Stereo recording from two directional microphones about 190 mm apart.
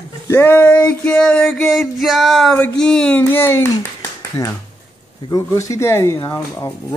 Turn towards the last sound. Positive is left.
turn(degrees=15)  # may be behind; listen again after turning